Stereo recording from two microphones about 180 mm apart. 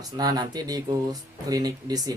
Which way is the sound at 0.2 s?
20° right (ahead or behind).